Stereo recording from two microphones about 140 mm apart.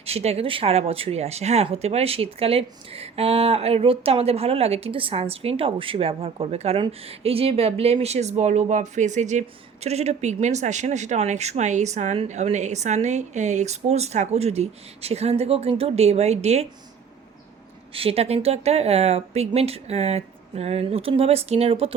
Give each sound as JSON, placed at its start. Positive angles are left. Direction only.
{"t": 0.0, "sound": "speech", "side_deg": -45}
{"t": 17.9, "sound": "speech", "side_deg": -45}